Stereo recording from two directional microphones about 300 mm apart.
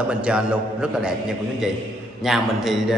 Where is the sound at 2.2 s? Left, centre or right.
Centre.